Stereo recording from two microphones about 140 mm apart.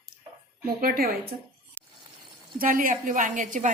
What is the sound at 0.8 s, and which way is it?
Speech, 90° right.